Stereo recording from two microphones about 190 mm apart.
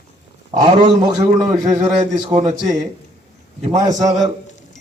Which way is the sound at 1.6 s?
40° right (ahead or behind).